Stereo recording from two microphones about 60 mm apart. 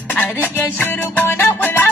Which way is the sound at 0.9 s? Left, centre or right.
Left.